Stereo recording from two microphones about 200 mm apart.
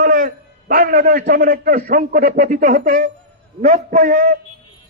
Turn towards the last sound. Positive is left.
turn(degrees=-40)  # may be behind; listen again after turning